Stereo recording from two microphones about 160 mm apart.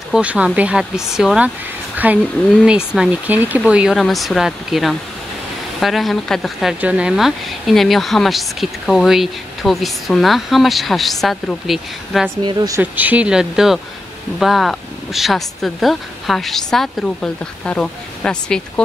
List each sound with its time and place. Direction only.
0.1 s speech: 10° right (ahead or behind)
12.4 s speech: 25° right (ahead or behind)
12.9 s speech: 10° right (ahead or behind); by 18.6 s 5° left (ahead or behind)